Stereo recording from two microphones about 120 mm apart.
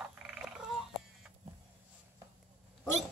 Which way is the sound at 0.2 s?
5° right (ahead or behind).